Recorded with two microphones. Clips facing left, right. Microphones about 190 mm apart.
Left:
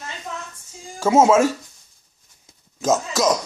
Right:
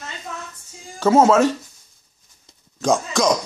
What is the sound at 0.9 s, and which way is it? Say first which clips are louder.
Speech: right 1 dB; 10° left (ahead or behind).